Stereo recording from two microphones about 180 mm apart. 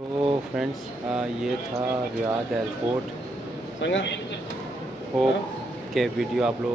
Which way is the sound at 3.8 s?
80° left.